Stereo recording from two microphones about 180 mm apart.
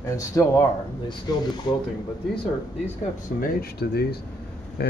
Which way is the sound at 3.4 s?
55° left (ahead or behind).